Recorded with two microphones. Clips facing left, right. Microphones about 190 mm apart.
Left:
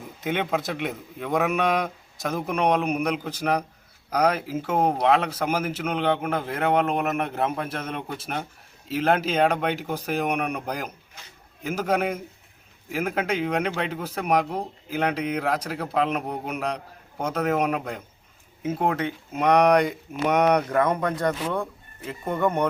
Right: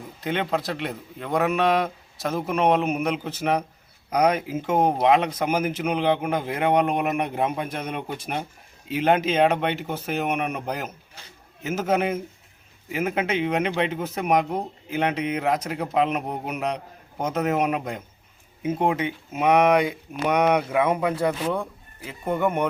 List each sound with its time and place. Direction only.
0.2 s a man's voice: 5° left (ahead or behind)
11.2 s a man's voice: 35° right (ahead or behind)
11.6 s a man's voice: 5° right (ahead or behind)